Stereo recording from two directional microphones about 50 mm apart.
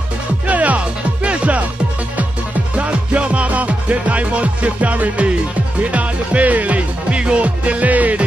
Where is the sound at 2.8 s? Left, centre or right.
Right.